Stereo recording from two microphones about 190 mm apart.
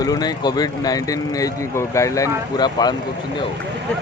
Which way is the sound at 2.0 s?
15° left (ahead or behind).